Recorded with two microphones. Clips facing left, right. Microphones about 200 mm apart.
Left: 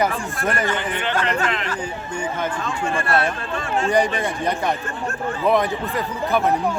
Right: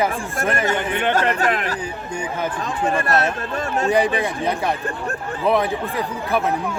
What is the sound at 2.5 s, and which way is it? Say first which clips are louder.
Speech: right 2 dB; 35° right (ahead or behind).